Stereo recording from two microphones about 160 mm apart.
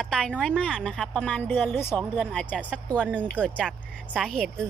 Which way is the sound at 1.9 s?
Centre (ahead or behind).